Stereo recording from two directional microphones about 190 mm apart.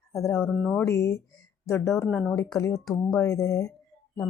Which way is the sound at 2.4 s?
15° left (ahead or behind).